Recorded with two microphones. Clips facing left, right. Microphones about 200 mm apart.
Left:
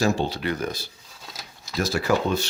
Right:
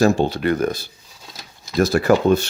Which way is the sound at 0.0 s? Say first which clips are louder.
Right 7 dB; 50° right (ahead or behind).